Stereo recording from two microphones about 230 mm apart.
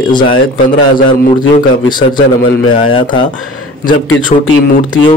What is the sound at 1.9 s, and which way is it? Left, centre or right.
Speech, centre.